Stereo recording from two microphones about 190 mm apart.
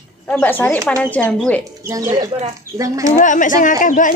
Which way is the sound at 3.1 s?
40° left (ahead or behind).